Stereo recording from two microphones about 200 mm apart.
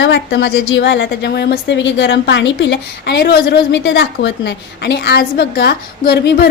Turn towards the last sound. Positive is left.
turn(degrees=50)  # may be behind; listen again after turning